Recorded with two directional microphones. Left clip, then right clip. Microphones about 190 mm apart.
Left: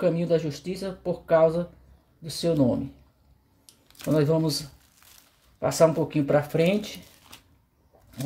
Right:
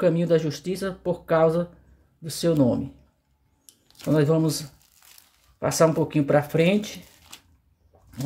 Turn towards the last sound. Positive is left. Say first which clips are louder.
# right 1 dB
turn(degrees=-10)  # may be behind; listen again after turning